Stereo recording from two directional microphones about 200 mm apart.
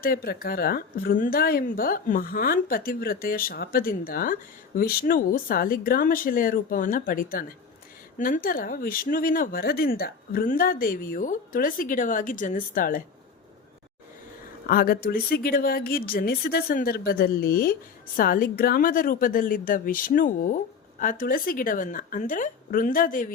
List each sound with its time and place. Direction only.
0.0 s a woman's voice: 45° left (ahead or behind)
14.7 s a woman's voice: 45° left (ahead or behind)